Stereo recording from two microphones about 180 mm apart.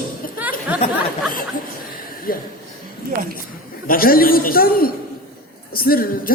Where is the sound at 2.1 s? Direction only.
55° left (ahead or behind).